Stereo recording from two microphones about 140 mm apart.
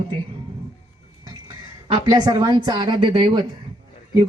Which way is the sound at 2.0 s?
25° right (ahead or behind).